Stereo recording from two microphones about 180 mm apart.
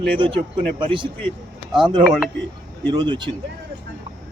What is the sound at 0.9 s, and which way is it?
Speech, 30° right (ahead or behind).